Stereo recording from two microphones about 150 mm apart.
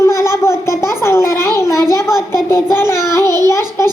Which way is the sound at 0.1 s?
20° left (ahead or behind).